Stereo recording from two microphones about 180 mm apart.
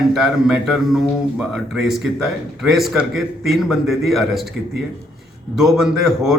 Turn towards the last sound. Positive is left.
turn(degrees=0)  # may be behind; listen again after turning